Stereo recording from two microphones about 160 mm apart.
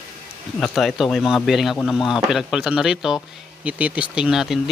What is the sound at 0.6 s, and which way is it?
A man's voice, centre (ahead or behind).